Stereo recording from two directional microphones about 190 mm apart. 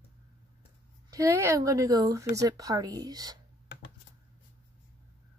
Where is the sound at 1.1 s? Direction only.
15° right (ahead or behind).